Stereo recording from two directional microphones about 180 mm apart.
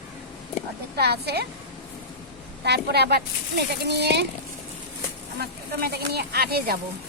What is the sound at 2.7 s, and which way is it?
Speech, 65° right (ahead or behind).